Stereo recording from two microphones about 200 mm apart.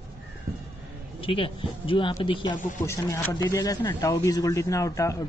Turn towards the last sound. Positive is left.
turn(degrees=15)  # may be behind; listen again after turning